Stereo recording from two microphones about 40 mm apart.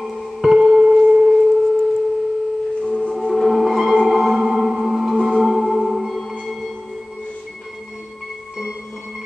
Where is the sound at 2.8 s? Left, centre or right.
Centre.